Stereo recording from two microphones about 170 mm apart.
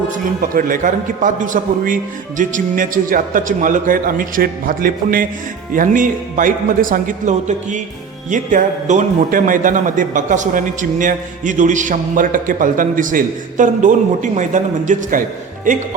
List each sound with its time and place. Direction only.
0.5 s a man's voice: 50° right (ahead or behind)